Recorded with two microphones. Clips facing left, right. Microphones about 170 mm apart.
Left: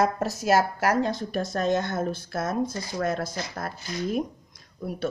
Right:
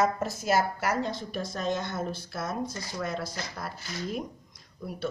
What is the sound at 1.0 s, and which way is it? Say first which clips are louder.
Speech: left 5 dB; 50° left (ahead or behind).